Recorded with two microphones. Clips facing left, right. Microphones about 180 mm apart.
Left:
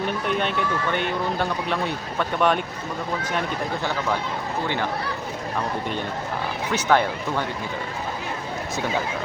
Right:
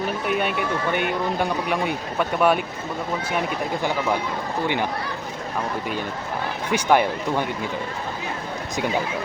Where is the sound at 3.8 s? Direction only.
15° right (ahead or behind).